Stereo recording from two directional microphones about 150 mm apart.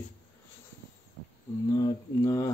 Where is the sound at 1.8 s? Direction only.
25° left (ahead or behind).